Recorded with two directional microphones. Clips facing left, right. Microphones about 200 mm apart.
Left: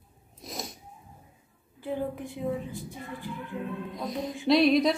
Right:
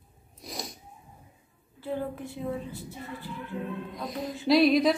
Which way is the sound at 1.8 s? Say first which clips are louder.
Left 1 dB; 15° left (ahead or behind).